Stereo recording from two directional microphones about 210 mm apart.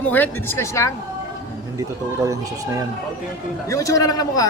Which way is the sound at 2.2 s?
15° right (ahead or behind).